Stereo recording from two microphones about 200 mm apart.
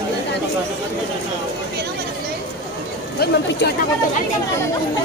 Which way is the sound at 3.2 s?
55° left (ahead or behind).